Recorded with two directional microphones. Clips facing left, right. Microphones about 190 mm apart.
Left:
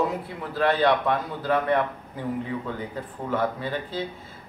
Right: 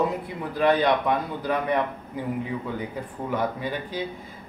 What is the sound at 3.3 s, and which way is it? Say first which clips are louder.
Speech: left 1 dB; 15° right (ahead or behind).